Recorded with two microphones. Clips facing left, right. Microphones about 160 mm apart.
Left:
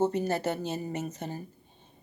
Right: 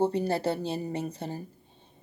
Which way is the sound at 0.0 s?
35° right (ahead or behind).